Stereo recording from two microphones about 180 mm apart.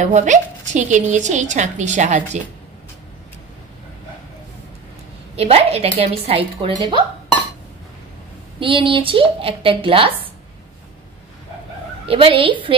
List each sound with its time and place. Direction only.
0.0 s a woman's voice: 45° right (ahead or behind)
5.3 s a woman's voice: 35° right (ahead or behind)
8.5 s speech: 30° right (ahead or behind)
12.1 s speech: 30° right (ahead or behind)